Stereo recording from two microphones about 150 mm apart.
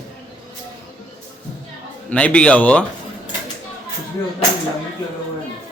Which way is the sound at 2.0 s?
10° left (ahead or behind).